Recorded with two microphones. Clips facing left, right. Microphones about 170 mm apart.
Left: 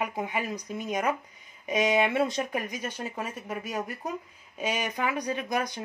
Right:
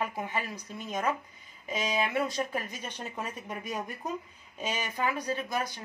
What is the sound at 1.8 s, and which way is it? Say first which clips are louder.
Speech: left 7 dB; 75° left (ahead or behind).